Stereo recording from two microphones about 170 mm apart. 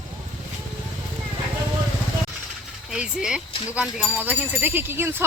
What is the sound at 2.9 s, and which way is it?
Speech, 5° right (ahead or behind).